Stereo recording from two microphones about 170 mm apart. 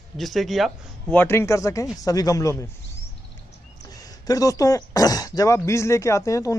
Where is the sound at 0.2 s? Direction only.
Centre (ahead or behind).